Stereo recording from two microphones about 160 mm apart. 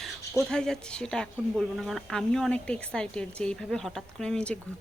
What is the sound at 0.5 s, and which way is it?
Speech, 5° left (ahead or behind).